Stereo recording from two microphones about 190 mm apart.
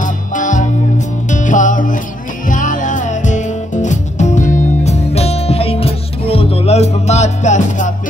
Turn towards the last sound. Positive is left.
turn(degrees=40)  # may be behind; listen again after turning